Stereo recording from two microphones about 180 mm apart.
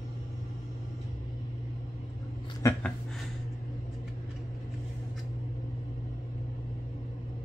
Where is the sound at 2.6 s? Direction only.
15° left (ahead or behind).